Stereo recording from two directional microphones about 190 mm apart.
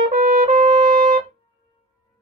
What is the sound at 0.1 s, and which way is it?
Trumpet, 45° right (ahead or behind).